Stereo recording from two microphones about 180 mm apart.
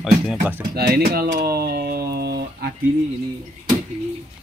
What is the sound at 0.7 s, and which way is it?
Speech, 60° right (ahead or behind).